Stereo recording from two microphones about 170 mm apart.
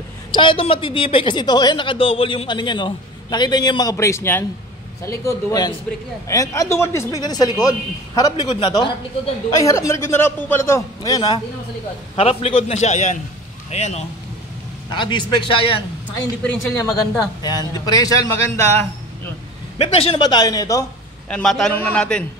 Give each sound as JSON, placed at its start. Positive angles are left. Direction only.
{"t": 0.3, "sound": "a woman's voice", "side_deg": 30}
{"t": 8.5, "sound": "a woman's voice", "side_deg": 30}
{"t": 9.6, "sound": "a woman's voice", "side_deg": 20}
{"t": 12.2, "sound": "a man's voice", "side_deg": 35}
{"t": 14.9, "sound": "a woman's voice", "side_deg": 25}
{"t": 16.4, "sound": "a woman's voice", "side_deg": 15}
{"t": 19.8, "sound": "a woman's voice", "side_deg": 35}
{"t": 21.3, "sound": "a man's voice", "side_deg": 5}